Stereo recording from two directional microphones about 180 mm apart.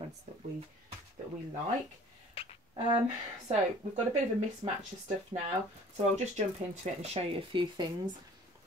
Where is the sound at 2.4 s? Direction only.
30° left (ahead or behind).